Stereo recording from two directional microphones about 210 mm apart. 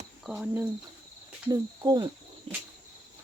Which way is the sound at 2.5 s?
25° right (ahead or behind).